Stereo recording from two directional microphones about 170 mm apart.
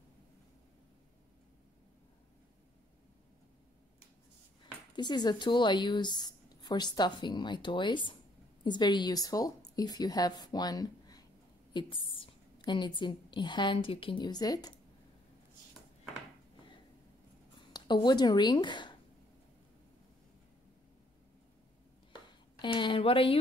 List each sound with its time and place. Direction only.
4.9 s a woman's voice: 25° left (ahead or behind)
17.7 s speech: 25° left (ahead or behind)
22.6 s a woman's voice: 30° left (ahead or behind)